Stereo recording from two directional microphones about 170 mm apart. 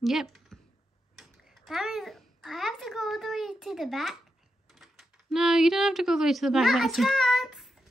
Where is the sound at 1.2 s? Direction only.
Centre (ahead or behind).